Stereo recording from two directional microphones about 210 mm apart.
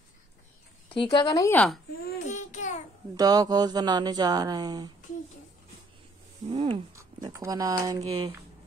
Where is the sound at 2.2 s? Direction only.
35° left (ahead or behind).